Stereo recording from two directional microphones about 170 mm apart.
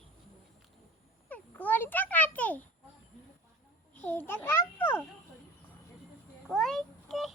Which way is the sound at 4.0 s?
10° left (ahead or behind).